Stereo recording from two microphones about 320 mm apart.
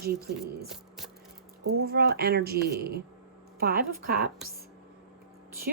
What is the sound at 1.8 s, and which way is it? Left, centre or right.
Speech, right.